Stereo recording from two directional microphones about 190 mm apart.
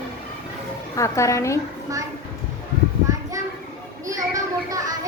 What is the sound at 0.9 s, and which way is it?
Speech, 15° left (ahead or behind).